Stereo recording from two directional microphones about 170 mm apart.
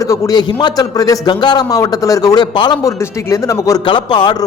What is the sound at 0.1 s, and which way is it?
Speech, 25° left (ahead or behind).